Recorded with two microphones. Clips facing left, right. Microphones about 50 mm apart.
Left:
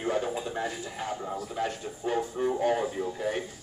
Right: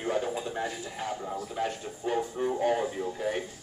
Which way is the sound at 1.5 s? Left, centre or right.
Centre.